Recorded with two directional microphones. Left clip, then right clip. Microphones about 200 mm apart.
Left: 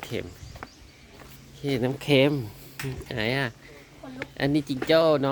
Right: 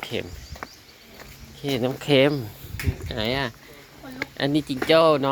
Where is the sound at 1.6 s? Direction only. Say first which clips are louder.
Right 2 dB; 20° left (ahead or behind).